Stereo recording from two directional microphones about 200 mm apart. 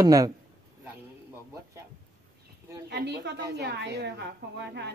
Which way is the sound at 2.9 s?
55° right (ahead or behind).